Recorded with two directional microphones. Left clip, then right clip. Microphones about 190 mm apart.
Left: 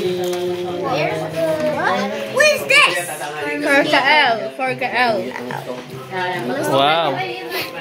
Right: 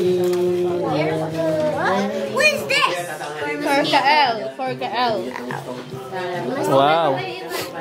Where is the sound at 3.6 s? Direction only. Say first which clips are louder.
Left 3 dB; 50° left (ahead or behind).